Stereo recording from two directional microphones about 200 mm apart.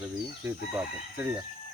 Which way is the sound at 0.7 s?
10° right (ahead or behind).